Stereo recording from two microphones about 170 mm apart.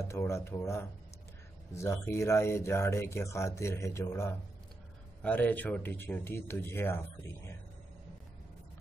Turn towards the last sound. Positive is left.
turn(degrees=15)  # may be behind; listen again after turning